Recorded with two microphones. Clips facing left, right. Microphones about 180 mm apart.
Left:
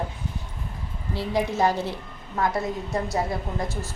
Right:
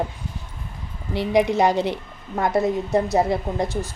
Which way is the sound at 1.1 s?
15° right (ahead or behind).